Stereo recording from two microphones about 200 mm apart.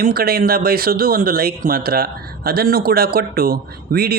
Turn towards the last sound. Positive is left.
turn(degrees=-50)  # may be behind; listen again after turning